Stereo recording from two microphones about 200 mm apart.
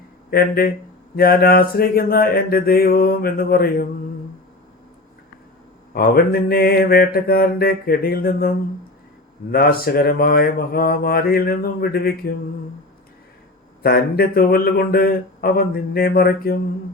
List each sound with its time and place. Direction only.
0.3 s mantra: 50° left (ahead or behind)
5.9 s mantra: 50° left (ahead or behind)
13.8 s mantra: 50° left (ahead or behind)